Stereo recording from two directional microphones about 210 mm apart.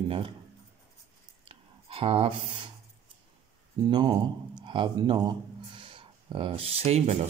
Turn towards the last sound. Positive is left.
turn(degrees=-30)  # may be behind; listen again after turning